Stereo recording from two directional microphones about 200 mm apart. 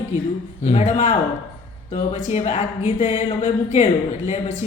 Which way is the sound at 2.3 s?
30° left (ahead or behind).